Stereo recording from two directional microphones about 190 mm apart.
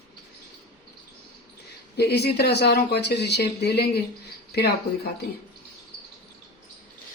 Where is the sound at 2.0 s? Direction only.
60° left (ahead or behind).